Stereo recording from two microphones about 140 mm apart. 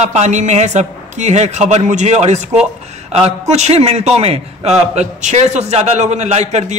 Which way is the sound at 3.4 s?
50° right (ahead or behind).